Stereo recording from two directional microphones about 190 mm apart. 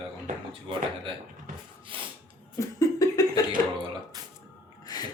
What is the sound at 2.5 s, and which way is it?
Laughter, 20° left (ahead or behind).